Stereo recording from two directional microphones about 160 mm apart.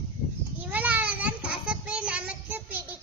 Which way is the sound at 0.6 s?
10° right (ahead or behind).